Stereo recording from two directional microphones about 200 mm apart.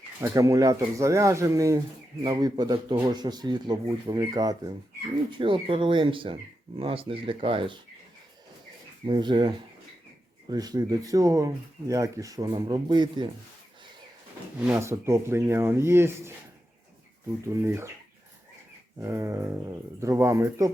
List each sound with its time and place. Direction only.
0.2 s speech: 15° right (ahead or behind)
9.0 s speech: 25° right (ahead or behind)
14.7 s speech: 15° right (ahead or behind)
17.4 s speech: 15° right (ahead or behind)
18.9 s speech: 10° right (ahead or behind)